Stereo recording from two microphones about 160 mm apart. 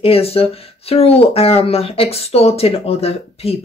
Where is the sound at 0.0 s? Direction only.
40° left (ahead or behind).